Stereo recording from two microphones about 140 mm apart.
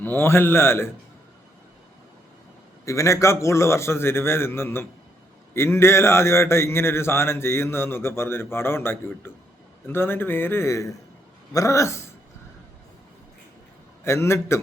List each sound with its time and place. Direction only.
0.0 s a man's voice: 15° left (ahead or behind)
2.8 s a man's voice: 20° left (ahead or behind)
14.0 s a man's voice: 20° left (ahead or behind)